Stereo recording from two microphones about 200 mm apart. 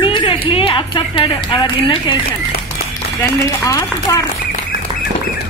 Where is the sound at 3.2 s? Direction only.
15° left (ahead or behind).